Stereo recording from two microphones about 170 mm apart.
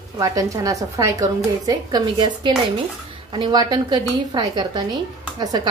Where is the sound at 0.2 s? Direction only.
20° right (ahead or behind).